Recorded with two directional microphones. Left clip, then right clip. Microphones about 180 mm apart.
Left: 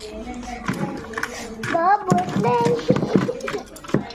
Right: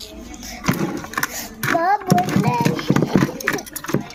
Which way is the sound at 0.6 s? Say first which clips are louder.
Right 7 dB; 60° right (ahead or behind).